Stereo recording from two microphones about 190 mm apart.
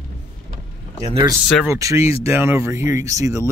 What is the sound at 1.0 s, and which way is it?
Speech, 25° right (ahead or behind).